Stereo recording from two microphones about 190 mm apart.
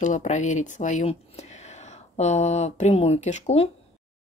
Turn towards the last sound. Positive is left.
turn(degrees=35)  # may be behind; listen again after turning